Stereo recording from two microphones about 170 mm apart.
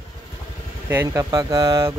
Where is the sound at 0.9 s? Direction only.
15° right (ahead or behind).